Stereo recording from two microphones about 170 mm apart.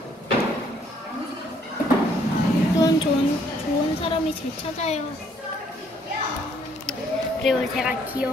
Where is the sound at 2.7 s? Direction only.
20° left (ahead or behind).